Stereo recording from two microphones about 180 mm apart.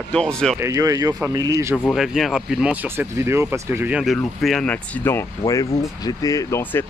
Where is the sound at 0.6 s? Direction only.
15° right (ahead or behind).